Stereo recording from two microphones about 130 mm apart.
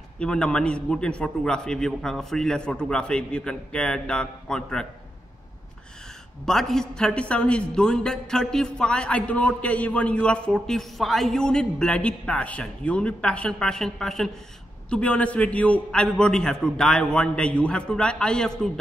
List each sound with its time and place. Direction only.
0.2 s a man's voice: 5° left (ahead or behind)
6.4 s a man's voice: centre (ahead or behind)